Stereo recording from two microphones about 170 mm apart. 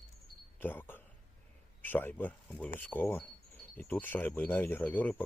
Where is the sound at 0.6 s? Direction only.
10° left (ahead or behind).